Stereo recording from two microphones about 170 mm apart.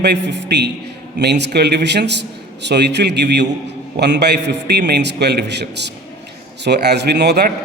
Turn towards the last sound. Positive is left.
turn(degrees=-75)  # may be behind; listen again after turning